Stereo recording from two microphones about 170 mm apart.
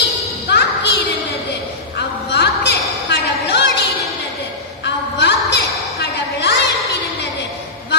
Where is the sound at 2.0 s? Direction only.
80° left.